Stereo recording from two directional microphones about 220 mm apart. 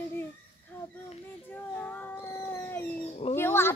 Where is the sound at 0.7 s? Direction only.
10° left (ahead or behind).